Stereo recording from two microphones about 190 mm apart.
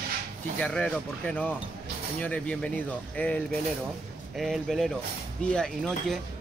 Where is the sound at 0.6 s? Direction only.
5° left (ahead or behind).